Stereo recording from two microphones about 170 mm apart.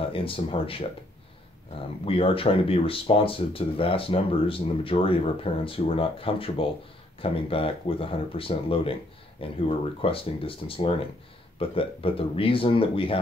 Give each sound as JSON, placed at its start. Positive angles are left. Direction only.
{"t": 0.1, "sound": "speech", "side_deg": 30}
{"t": 2.0, "sound": "speech", "side_deg": 35}